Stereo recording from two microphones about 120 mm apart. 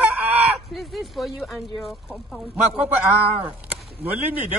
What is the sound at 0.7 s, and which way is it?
Speech, centre (ahead or behind).